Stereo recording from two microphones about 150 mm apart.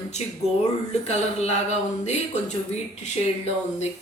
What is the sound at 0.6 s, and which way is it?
Speech, 45° left (ahead or behind).